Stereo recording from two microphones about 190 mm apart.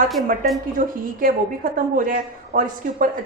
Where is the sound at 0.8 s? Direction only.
45° right (ahead or behind).